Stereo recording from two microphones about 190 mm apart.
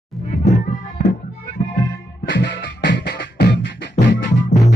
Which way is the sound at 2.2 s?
65° left (ahead or behind).